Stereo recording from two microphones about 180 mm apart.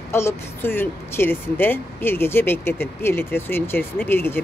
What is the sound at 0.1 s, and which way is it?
Speech, 15° left (ahead or behind).